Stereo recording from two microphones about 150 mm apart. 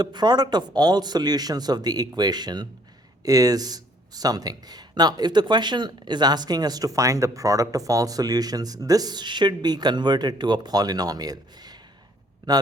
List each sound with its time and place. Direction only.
0.0 s speech: 30° right (ahead or behind)